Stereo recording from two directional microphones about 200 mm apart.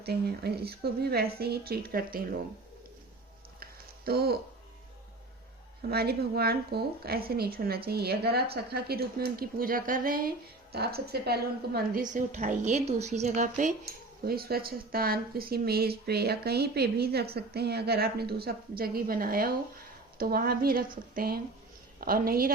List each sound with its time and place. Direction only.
0.0 s speech: 55° right (ahead or behind)
3.6 s a sound: 50° right (ahead or behind)
5.9 s speech: 50° right (ahead or behind)
14.3 s speech: 50° right (ahead or behind)